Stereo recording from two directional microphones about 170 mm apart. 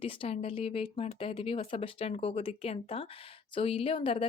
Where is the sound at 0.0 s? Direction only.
35° left (ahead or behind).